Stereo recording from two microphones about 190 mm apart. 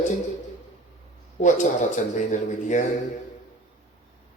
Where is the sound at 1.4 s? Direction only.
40° left (ahead or behind).